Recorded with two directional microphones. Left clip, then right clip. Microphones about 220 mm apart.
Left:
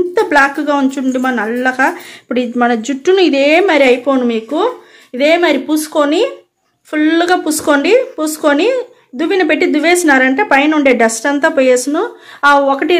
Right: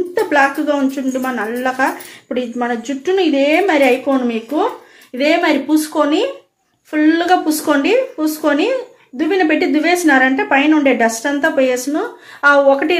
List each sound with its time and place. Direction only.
0.1 s speech: 40° left (ahead or behind)